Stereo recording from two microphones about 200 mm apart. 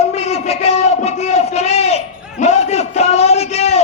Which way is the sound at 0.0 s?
30° left (ahead or behind).